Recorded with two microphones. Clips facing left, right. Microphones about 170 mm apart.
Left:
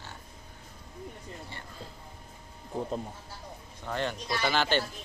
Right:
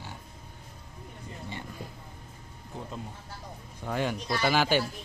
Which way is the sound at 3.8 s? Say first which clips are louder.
Right 2 dB; 10° right (ahead or behind).